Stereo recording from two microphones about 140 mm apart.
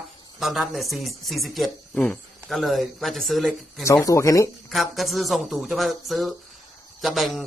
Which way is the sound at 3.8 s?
20° left (ahead or behind).